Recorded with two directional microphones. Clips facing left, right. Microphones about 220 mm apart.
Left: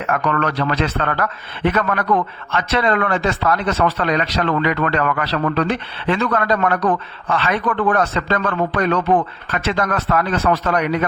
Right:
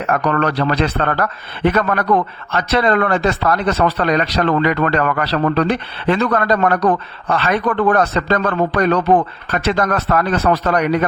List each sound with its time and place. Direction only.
0.0 s a man's voice: 35° right (ahead or behind)